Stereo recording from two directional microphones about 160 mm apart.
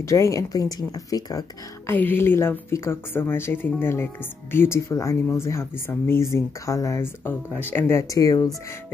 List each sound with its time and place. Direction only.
0.0 s speech: 20° left (ahead or behind)
1.9 s a woman's voice: 10° left (ahead or behind)